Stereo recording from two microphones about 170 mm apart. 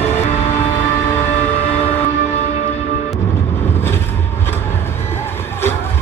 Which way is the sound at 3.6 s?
15° left (ahead or behind).